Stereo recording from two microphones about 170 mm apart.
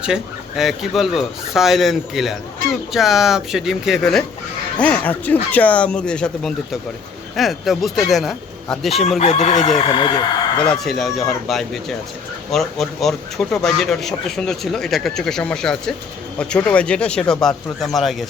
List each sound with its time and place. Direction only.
0.0 s speech: 5° right (ahead or behind)
9.1 s crowing: 40° left (ahead or behind)
9.8 s speech: 30° left (ahead or behind)
10.6 s speech: 5° left (ahead or behind)